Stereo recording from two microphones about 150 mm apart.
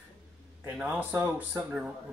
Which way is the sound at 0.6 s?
10° right (ahead or behind).